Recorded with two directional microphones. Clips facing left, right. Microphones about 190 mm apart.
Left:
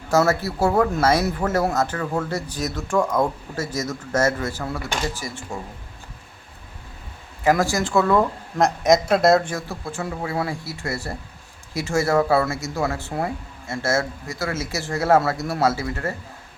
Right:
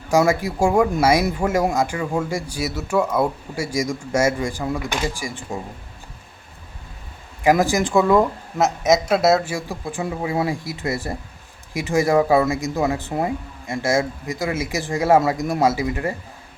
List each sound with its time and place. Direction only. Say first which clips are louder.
0.1 s speech: right 2 dB; 15° right (ahead or behind)
7.4 s speech: right 3 dB; 15° right (ahead or behind)